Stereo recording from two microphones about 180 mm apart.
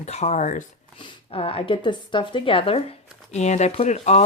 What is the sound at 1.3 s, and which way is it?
Speech, 30° left (ahead or behind).